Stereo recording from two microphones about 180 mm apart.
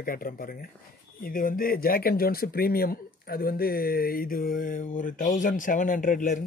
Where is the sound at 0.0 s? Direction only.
50° left (ahead or behind).